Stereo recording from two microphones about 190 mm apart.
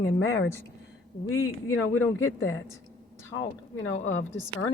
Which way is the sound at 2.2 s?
90° left.